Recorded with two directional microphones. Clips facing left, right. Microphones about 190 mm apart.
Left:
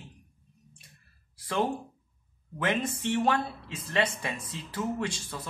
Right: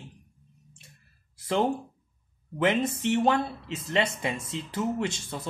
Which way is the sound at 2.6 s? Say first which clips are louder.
Right 4 dB; 20° right (ahead or behind).